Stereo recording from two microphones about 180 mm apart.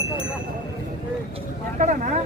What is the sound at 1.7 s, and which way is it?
Vehicle, 45° right (ahead or behind).